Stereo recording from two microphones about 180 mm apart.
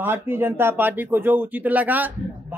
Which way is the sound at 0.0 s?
10° right (ahead or behind).